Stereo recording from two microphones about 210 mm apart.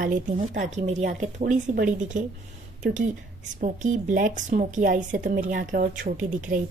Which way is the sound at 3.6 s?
35° right (ahead or behind).